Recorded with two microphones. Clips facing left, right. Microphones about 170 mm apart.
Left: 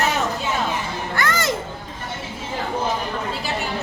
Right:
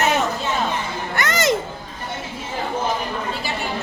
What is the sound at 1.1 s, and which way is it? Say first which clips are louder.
Children playing: right 3 dB; 20° right (ahead or behind).